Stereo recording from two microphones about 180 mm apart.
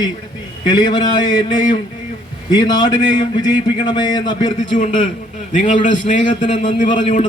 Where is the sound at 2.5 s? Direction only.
25° left (ahead or behind).